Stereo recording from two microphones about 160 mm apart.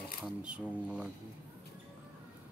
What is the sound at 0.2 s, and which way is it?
Speech, 5° right (ahead or behind).